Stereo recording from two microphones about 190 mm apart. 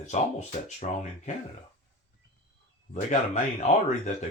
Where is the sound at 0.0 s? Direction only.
40° left (ahead or behind).